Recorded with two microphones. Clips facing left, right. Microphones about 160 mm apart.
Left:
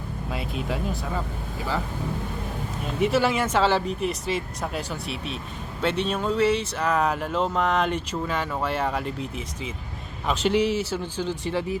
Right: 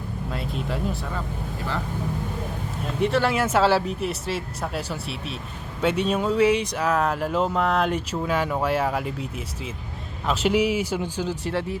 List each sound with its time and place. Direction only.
0.3 s speech: 5° left (ahead or behind)
2.8 s speech: 5° left (ahead or behind)